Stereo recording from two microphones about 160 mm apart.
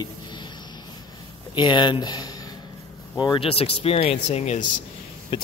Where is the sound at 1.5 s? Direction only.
30° left (ahead or behind).